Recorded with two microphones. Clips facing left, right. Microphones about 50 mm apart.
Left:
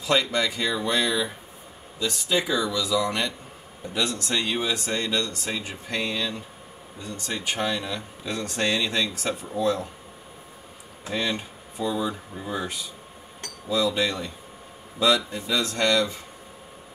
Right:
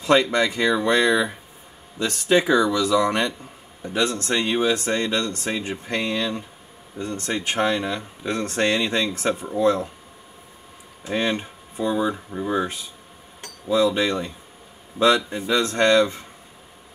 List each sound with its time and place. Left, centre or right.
0.0 s speech: right
11.1 s speech: right